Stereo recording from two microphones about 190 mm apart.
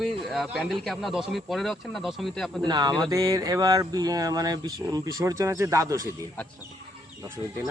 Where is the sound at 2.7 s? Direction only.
20° right (ahead or behind).